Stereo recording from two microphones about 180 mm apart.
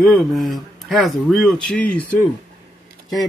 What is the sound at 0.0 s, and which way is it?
Speech, centre (ahead or behind).